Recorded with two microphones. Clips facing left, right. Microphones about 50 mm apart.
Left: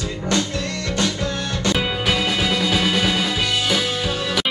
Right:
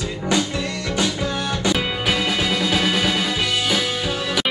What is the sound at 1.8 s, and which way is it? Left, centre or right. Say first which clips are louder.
Music: left 1 dB; centre.